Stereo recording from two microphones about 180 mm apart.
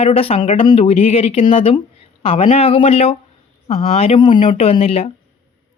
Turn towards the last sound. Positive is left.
turn(degrees=35)  # may be behind; listen again after turning